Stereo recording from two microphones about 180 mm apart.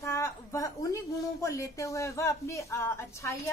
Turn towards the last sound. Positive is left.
turn(degrees=15)  # may be behind; listen again after turning